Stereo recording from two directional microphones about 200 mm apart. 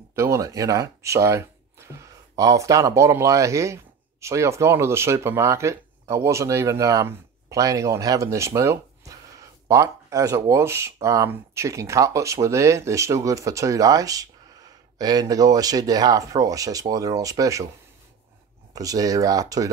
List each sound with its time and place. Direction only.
0.1 s speech: 15° right (ahead or behind)
18.7 s speech: 15° right (ahead or behind)